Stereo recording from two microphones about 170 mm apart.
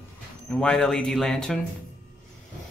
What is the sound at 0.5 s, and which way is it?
Speech, 5° left (ahead or behind).